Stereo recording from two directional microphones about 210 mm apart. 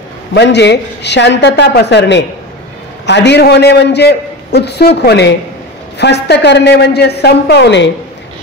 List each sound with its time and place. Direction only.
0.3 s a man's voice: 55° left (ahead or behind)